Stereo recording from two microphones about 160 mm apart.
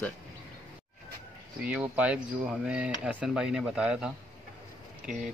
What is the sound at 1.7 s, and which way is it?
Speech, 10° right (ahead or behind).